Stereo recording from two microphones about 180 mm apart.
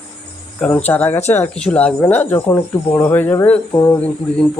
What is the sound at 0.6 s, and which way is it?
Speech, 10° left (ahead or behind).